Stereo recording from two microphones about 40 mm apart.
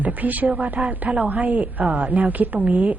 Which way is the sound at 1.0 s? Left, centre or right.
Right.